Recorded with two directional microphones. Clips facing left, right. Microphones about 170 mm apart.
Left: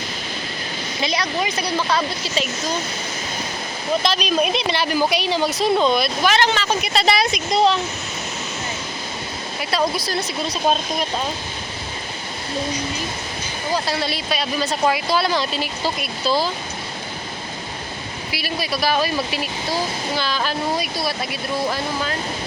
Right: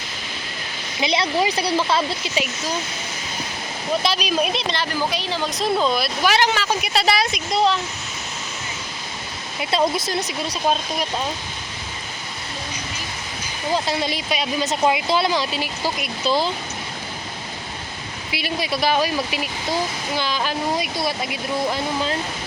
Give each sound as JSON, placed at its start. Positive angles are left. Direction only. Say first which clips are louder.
{"t": 1.0, "sound": "speech", "louder": "right 3 dB", "side_deg": -25}
{"t": 2.3, "sound": "speech", "louder": "left 3 dB", "side_deg": -10}
{"t": 4.0, "sound": "speech", "louder": "left 2 dB", "side_deg": -10}
{"t": 5.5, "sound": "speech", "louder": "left 1 dB", "side_deg": 0}
{"t": 9.7, "sound": "speech", "louder": "right 1 dB", "side_deg": -20}
{"t": 13.7, "sound": "speech", "louder": "even", "side_deg": -20}
{"t": 18.3, "sound": "speech", "louder": "right 1 dB", "side_deg": -20}